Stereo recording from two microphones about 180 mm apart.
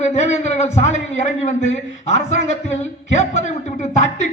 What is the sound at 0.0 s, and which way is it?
A man's voice, 40° left (ahead or behind).